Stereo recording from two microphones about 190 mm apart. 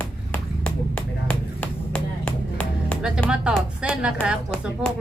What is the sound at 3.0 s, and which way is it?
Speech, 5° right (ahead or behind).